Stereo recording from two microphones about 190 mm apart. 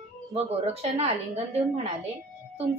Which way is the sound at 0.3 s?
30° right (ahead or behind).